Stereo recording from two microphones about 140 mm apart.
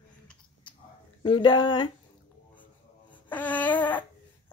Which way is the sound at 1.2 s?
35° left (ahead or behind).